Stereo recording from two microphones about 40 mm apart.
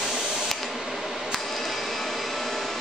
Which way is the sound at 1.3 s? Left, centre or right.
Centre.